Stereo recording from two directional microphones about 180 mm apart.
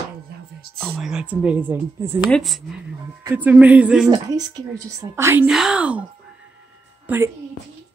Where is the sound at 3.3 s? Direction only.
10° right (ahead or behind).